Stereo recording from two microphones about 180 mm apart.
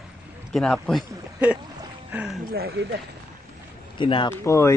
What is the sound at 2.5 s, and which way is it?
Speech, 65° right (ahead or behind).